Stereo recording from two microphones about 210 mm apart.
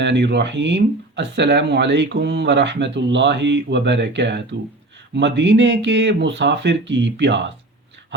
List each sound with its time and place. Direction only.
0.0 s speech: 55° right (ahead or behind)